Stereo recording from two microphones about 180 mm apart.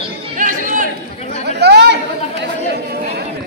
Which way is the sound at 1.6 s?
70° right (ahead or behind).